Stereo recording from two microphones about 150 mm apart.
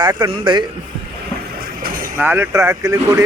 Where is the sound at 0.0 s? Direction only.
30° right (ahead or behind).